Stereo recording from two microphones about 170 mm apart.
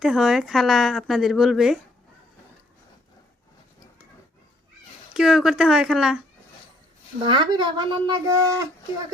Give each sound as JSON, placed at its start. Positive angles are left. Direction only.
{"t": 0.0, "sound": "speech", "side_deg": 0}
{"t": 5.1, "sound": "speech", "side_deg": -5}
{"t": 7.3, "sound": "speech", "side_deg": -25}